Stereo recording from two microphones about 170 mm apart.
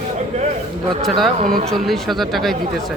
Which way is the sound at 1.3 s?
45° right (ahead or behind).